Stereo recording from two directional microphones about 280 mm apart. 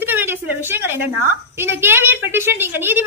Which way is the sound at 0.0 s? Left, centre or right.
Centre.